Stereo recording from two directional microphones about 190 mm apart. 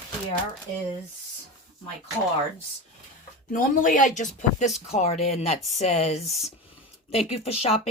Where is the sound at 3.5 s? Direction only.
45° left (ahead or behind).